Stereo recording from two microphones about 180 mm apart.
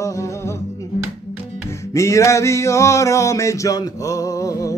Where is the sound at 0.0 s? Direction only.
15° left (ahead or behind).